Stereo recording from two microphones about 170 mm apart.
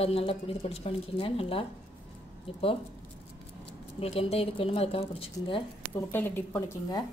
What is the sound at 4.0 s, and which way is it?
A woman's voice, 35° left (ahead or behind).